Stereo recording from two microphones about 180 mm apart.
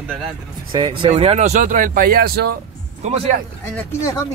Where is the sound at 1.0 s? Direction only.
30° right (ahead or behind); by 2.5 s 60° right (ahead or behind).